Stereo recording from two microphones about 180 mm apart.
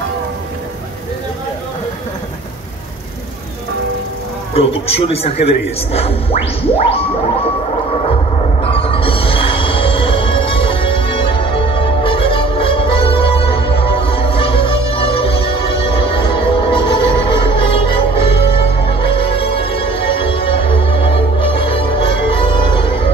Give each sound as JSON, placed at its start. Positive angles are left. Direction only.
{"t": 4.6, "sound": "speech", "side_deg": 35}
{"t": 6.6, "sound": "speech", "side_deg": 30}
{"t": 8.7, "sound": "music", "side_deg": 30}